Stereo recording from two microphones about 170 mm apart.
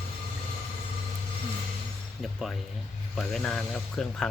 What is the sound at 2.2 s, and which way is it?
A man's voice, centre (ahead or behind).